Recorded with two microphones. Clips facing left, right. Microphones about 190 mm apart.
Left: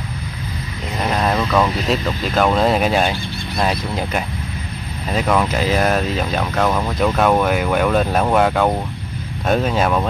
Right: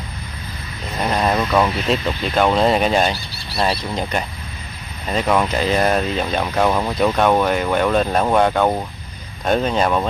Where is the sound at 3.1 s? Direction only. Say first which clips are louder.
Left 5 dB; 40° right (ahead or behind).